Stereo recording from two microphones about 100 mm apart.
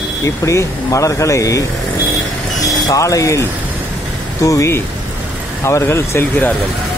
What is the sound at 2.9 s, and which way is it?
Speech, 35° left (ahead or behind).